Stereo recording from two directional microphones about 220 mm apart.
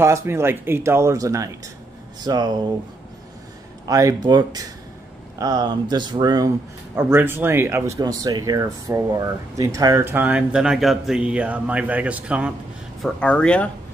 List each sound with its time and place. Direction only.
0.0 s speech: 10° right (ahead or behind)
3.8 s speech: 15° right (ahead or behind)
13.0 s speech: 5° left (ahead or behind)